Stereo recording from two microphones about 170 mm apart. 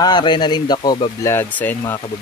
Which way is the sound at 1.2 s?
15° left (ahead or behind).